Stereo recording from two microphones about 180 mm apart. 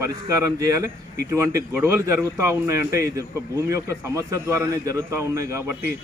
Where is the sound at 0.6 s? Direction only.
15° right (ahead or behind).